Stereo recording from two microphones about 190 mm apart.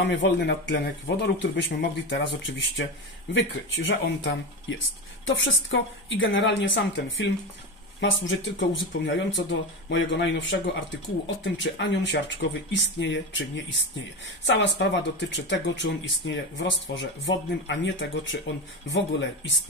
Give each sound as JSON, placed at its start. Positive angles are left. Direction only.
{"t": 0.0, "sound": "speech", "side_deg": 65}
{"t": 5.2, "sound": "speech", "side_deg": 90}